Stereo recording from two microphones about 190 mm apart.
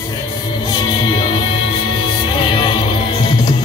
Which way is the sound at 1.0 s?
25° left (ahead or behind).